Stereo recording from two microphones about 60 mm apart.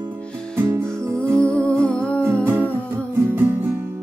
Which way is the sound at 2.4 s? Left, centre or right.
Right.